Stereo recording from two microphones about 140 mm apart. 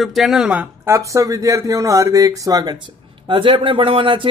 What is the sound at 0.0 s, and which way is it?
Speech, centre (ahead or behind).